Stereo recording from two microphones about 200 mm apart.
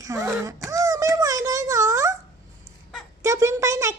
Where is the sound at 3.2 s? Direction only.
15° right (ahead or behind).